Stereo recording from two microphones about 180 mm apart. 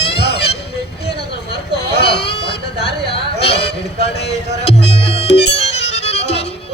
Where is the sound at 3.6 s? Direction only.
70° left (ahead or behind).